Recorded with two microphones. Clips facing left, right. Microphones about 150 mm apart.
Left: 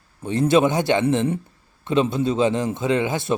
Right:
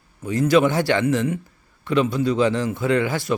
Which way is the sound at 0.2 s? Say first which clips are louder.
Even; 25° left (ahead or behind).